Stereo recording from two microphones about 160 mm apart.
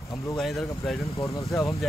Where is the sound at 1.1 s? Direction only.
20° left (ahead or behind).